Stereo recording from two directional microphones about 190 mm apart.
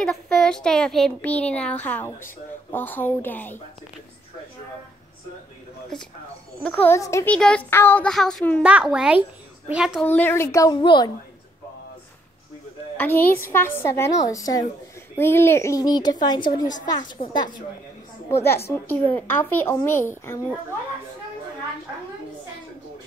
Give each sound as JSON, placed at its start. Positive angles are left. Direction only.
{"t": 0.0, "sound": "speech", "side_deg": 5}
{"t": 6.6, "sound": "a child's voice", "side_deg": 10}
{"t": 10.0, "sound": "speech", "side_deg": 10}
{"t": 12.9, "sound": "a child's voice", "side_deg": 10}
{"t": 18.3, "sound": "speech", "side_deg": 15}